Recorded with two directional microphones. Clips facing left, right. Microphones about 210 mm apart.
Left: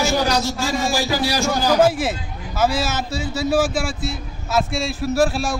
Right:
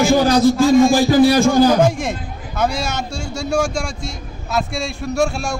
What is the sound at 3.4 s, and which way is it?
Speech, 5° left (ahead or behind).